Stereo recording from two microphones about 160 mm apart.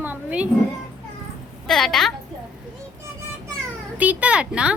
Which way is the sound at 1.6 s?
Centre (ahead or behind).